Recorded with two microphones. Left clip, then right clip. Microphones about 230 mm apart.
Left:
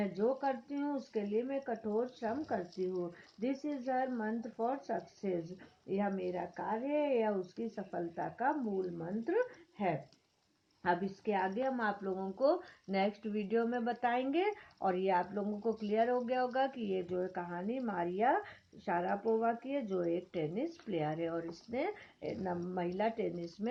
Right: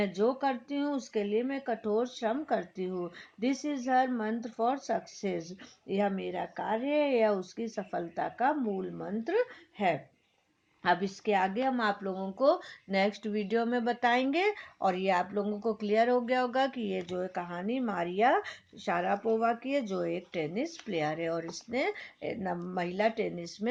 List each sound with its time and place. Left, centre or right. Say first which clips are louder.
0.0 s speech: right 5 dB; right